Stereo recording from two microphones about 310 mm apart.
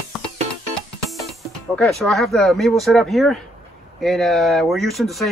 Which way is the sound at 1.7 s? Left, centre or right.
Centre.